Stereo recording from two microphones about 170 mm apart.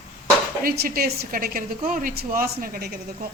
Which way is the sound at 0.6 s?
60° right (ahead or behind).